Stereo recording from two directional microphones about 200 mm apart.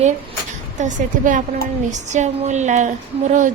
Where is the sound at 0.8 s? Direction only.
40° right (ahead or behind).